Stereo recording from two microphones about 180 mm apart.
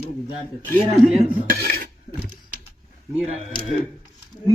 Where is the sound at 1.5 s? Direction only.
60° right (ahead or behind).